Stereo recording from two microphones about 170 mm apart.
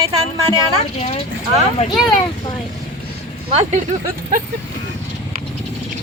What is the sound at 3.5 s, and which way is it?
Speech, 40° right (ahead or behind).